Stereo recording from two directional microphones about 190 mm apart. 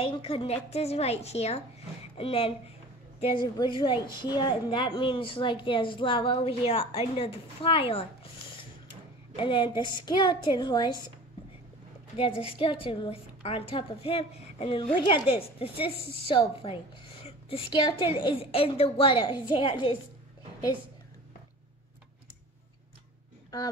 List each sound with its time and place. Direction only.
0.0 s a woman's voice: 30° left (ahead or behind)
9.4 s a woman's voice: 25° left (ahead or behind)
12.2 s a woman's voice: 30° left (ahead or behind)